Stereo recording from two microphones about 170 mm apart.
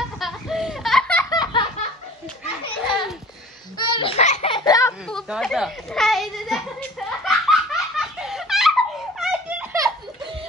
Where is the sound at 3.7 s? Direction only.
25° left (ahead or behind).